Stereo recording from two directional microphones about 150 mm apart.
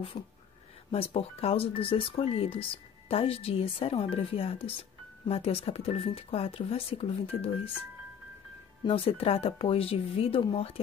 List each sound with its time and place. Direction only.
0.9 s speech: 40° left (ahead or behind)
8.8 s speech: 40° left (ahead or behind)